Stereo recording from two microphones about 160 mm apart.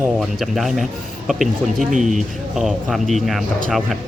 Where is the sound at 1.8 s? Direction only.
50° right (ahead or behind).